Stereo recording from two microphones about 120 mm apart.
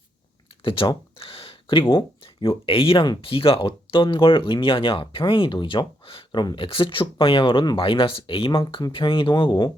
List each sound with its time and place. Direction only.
0.6 s a sound: 45° left (ahead or behind)
1.9 s speech: 45° left (ahead or behind)
6.4 s speech: 35° left (ahead or behind)
6.7 s speech: 45° left (ahead or behind)
8.6 s speech: 35° left (ahead or behind)
8.9 s speech: 45° left (ahead or behind)